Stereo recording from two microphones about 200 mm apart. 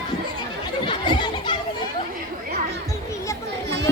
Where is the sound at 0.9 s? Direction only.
20° left (ahead or behind).